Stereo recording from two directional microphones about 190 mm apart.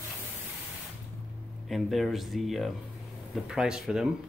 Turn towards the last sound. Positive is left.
turn(degrees=-5)  # may be behind; listen again after turning